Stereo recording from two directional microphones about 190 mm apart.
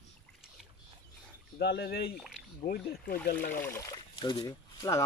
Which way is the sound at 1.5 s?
60° left (ahead or behind).